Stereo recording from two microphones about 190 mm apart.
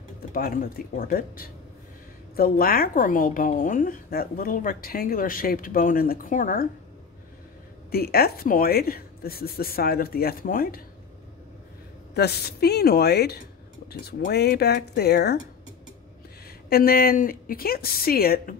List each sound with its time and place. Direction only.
0.3 s a woman's voice: 50° left (ahead or behind)
7.9 s a woman's voice: 55° left (ahead or behind)
12.1 s speech: 60° left (ahead or behind)
16.4 s a woman's voice: 55° left (ahead or behind)